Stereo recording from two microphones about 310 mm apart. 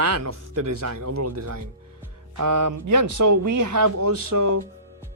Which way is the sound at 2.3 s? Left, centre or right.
Right.